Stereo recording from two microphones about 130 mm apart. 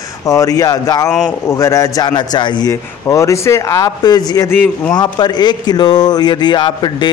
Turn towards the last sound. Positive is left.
turn(degrees=35)  # may be behind; listen again after turning